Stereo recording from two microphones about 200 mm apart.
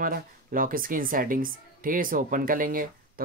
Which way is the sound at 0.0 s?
45° right (ahead or behind).